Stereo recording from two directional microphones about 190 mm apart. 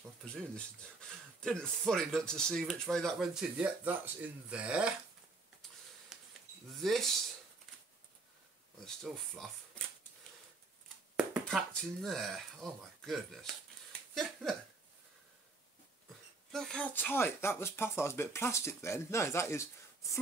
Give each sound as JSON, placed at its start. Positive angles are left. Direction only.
{"t": 1.4, "sound": "speech", "side_deg": 0}
{"t": 6.1, "sound": "a sound", "side_deg": 0}
{"t": 6.8, "sound": "speech", "side_deg": 0}
{"t": 8.7, "sound": "speech", "side_deg": 0}
{"t": 11.4, "sound": "speech", "side_deg": 5}
{"t": 14.1, "sound": "a sound", "side_deg": 0}
{"t": 16.5, "sound": "speech", "side_deg": 5}